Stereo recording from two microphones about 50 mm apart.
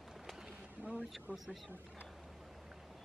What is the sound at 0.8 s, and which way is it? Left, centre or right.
Speech, right.